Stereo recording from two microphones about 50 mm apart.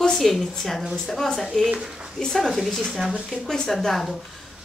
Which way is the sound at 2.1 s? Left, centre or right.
Centre.